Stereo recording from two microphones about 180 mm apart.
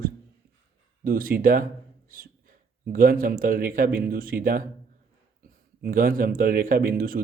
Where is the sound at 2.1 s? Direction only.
50° right (ahead or behind).